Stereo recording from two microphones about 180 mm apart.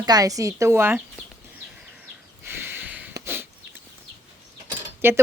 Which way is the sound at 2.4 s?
10° right (ahead or behind).